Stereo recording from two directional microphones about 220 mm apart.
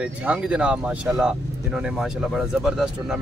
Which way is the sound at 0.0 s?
5° right (ahead or behind).